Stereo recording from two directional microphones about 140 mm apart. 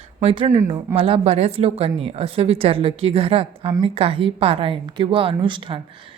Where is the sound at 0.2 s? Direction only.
50° right (ahead or behind).